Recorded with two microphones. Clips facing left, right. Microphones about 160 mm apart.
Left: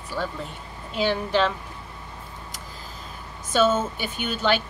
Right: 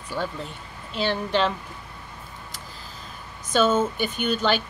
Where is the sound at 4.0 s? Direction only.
50° right (ahead or behind).